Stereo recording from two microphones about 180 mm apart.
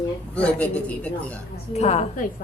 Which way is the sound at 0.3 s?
5° left (ahead or behind).